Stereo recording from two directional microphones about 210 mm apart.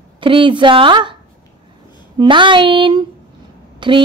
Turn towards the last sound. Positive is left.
turn(degrees=-25)  # may be behind; listen again after turning